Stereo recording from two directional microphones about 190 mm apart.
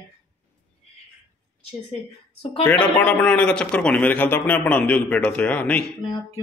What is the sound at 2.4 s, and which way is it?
Speech, 30° left (ahead or behind).